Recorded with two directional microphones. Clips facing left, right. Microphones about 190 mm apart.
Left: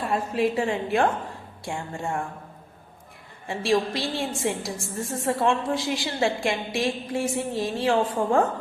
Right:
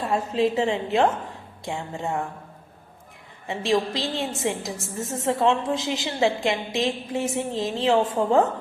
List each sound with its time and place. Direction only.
0.1 s a woman's voice: 25° right (ahead or behind)
3.4 s a woman's voice: 20° right (ahead or behind)